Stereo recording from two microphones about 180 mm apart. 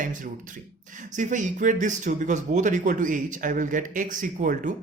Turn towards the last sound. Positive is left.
turn(degrees=-45)  # may be behind; listen again after turning